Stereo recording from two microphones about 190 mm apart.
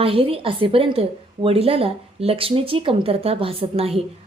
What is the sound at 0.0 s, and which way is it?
A woman's voice, 30° right (ahead or behind).